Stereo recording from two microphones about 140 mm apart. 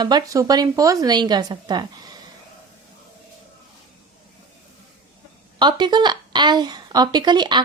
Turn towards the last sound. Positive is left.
turn(degrees=-30)  # may be behind; listen again after turning